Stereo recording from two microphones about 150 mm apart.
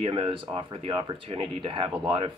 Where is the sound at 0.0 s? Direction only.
35° right (ahead or behind).